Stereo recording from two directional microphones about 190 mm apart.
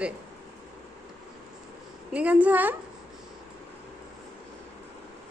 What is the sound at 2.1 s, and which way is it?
Speech, 5° right (ahead or behind).